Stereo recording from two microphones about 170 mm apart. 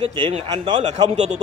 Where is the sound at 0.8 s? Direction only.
40° right (ahead or behind).